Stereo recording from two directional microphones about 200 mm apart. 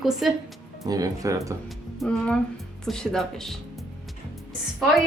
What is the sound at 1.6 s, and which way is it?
A woman's voice, 5° left (ahead or behind).